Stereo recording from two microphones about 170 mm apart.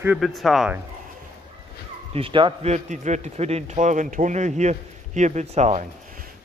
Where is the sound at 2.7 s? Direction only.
45° right (ahead or behind).